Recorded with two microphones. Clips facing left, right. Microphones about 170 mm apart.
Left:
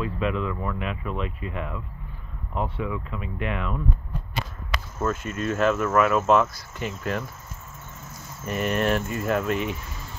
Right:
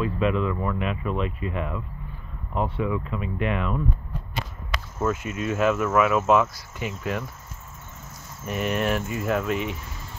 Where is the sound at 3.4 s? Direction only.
25° right (ahead or behind).